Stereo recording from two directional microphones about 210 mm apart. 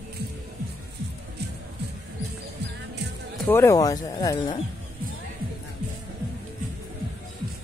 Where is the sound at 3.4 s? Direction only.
10° left (ahead or behind).